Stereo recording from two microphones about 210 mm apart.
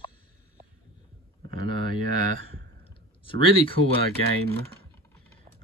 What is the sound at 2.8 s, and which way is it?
Clicking, 25° left (ahead or behind).